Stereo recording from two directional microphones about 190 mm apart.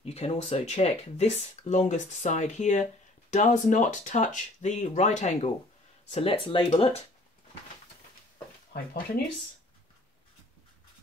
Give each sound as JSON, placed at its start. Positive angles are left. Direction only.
{"t": 0.0, "sound": "speech", "side_deg": 35}